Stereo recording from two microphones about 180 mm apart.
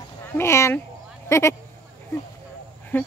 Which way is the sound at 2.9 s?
10° left (ahead or behind).